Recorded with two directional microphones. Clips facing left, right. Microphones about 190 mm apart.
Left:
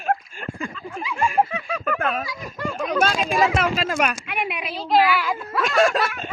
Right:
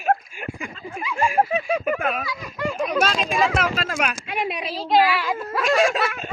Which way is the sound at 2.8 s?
Centre (ahead or behind).